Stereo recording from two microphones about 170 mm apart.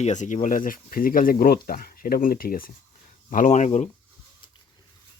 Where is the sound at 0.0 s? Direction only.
45° left (ahead or behind).